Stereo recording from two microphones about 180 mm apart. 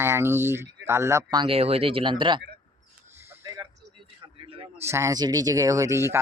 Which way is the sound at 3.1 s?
15° right (ahead or behind).